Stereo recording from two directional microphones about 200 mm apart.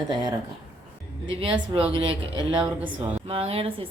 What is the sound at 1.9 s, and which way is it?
Speech, 25° right (ahead or behind).